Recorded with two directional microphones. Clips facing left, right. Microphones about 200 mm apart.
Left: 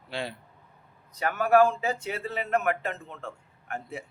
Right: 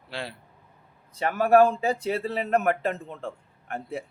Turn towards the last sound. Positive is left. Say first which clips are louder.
# right 3 dB
turn(degrees=-35)  # may be behind; listen again after turning